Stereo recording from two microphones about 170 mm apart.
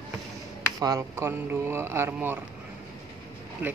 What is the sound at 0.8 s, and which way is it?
Speech, 20° right (ahead or behind).